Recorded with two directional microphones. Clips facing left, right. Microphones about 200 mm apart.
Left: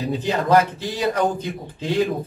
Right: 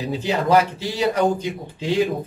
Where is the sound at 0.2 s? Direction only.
10° right (ahead or behind).